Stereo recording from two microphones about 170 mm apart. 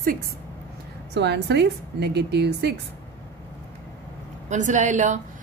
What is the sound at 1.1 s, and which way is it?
A woman's voice, 85° right.